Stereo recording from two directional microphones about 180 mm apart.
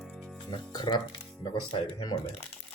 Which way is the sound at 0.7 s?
25° left (ahead or behind).